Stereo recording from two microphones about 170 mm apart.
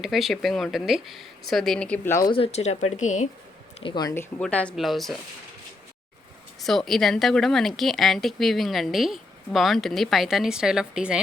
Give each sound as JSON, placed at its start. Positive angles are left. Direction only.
{"t": 0.0, "sound": "a woman's voice", "side_deg": 0}
{"t": 2.3, "sound": "speech", "side_deg": 35}
{"t": 3.8, "sound": "speech", "side_deg": 30}
{"t": 4.1, "sound": "a woman's voice", "side_deg": 10}
{"t": 6.6, "sound": "a woman's voice", "side_deg": 0}